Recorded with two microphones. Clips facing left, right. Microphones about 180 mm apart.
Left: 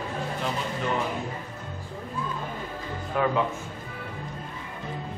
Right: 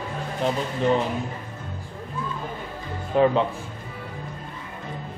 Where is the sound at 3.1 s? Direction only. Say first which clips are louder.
Right 7 dB; 25° right (ahead or behind).